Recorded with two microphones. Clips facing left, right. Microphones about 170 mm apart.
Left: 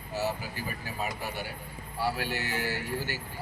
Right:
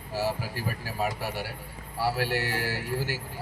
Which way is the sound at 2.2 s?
90° right.